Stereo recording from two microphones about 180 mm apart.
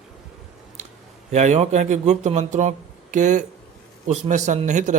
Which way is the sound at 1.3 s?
40° right (ahead or behind).